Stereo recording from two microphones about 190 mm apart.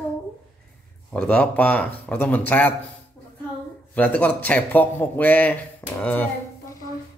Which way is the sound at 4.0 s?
5° left (ahead or behind).